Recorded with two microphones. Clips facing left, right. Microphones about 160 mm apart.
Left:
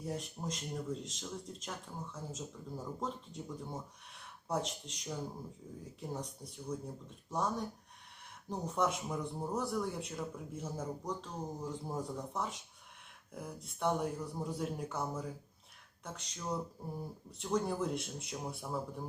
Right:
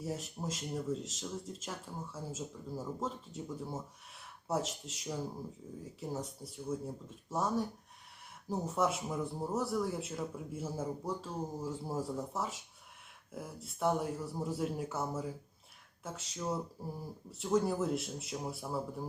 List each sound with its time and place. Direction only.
0.0 s speech: centre (ahead or behind)